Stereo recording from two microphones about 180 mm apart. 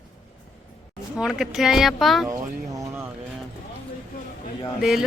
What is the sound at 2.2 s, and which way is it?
Speech, 15° right (ahead or behind).